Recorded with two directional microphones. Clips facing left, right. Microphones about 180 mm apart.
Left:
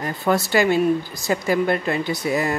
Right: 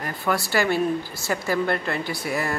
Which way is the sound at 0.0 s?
20° left (ahead or behind).